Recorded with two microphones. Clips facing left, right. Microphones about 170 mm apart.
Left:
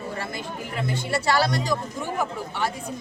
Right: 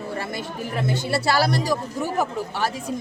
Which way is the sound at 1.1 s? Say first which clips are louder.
Right 1 dB; 35° right (ahead or behind).